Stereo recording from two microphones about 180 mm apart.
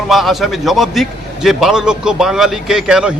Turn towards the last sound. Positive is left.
turn(degrees=-5)  # may be behind; listen again after turning